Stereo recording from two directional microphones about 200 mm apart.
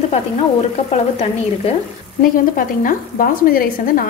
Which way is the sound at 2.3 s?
40° left (ahead or behind).